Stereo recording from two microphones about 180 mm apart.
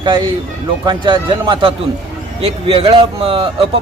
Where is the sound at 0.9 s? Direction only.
25° right (ahead or behind).